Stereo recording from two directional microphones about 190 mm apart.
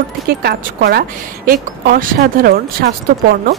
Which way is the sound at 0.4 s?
55° right (ahead or behind).